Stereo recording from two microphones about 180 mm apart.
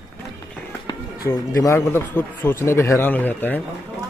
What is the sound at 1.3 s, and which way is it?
A man's voice, 15° left (ahead or behind).